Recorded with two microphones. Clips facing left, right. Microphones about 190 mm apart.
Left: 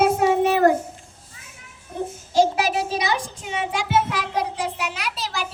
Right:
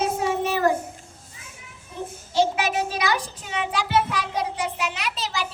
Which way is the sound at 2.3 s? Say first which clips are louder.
Left 3 dB; 40° left (ahead or behind).